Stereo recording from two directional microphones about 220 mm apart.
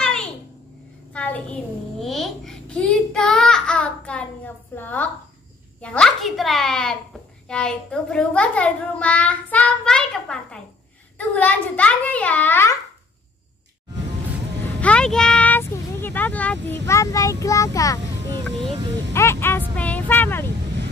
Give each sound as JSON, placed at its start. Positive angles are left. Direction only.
{"t": 1.1, "sound": "a sound", "side_deg": 5}
{"t": 4.7, "sound": "a child's voice", "side_deg": 10}
{"t": 14.8, "sound": "speech", "side_deg": 5}
{"t": 19.1, "sound": "vehicle", "side_deg": 10}
{"t": 19.7, "sound": "a child's voice", "side_deg": 5}